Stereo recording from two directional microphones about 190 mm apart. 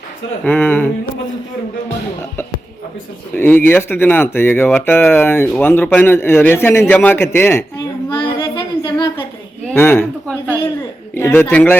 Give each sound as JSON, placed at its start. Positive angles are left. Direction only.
{"t": 0.4, "sound": "speech", "side_deg": 10}
{"t": 3.3, "sound": "speech", "side_deg": 10}
{"t": 8.1, "sound": "singing", "side_deg": 25}
{"t": 9.7, "sound": "speech", "side_deg": 10}